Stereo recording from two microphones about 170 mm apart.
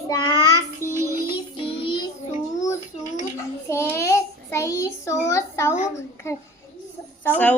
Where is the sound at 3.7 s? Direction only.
15° left (ahead or behind).